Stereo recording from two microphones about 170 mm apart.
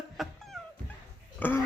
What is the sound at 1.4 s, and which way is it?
Speech, 10° left (ahead or behind).